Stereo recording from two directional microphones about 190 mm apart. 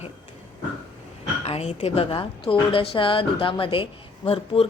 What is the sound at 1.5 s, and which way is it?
A woman's voice, 30° left (ahead or behind).